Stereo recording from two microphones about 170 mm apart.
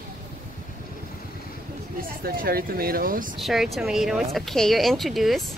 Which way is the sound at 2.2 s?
65° right (ahead or behind).